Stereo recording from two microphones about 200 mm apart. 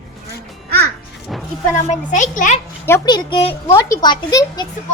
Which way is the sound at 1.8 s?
40° left (ahead or behind).